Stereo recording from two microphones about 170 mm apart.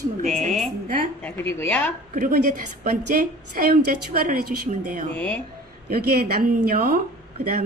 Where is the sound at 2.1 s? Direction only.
55° right (ahead or behind).